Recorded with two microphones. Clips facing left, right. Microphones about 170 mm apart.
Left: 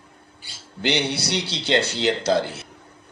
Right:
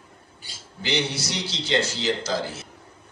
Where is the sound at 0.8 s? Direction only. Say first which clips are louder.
Left 3 dB; 65° left (ahead or behind).